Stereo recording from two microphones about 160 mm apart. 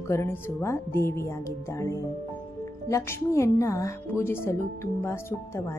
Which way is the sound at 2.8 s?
20° left (ahead or behind).